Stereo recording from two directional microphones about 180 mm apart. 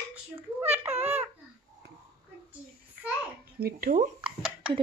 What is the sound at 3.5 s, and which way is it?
Speech, 55° right (ahead or behind).